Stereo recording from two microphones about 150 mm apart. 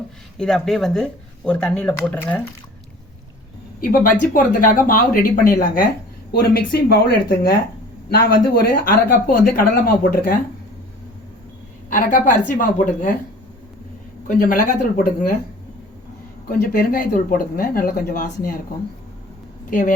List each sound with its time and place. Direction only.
0.3 s speech: 5° left (ahead or behind)
3.8 s speech: 65° left (ahead or behind)
6.3 s a man's voice: 85° left
11.9 s a woman's voice: 65° left (ahead or behind)
14.3 s a woman's voice: 65° left (ahead or behind)
16.5 s speech: 70° left (ahead or behind)